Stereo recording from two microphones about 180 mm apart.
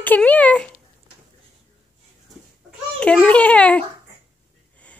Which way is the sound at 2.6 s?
5° left (ahead or behind).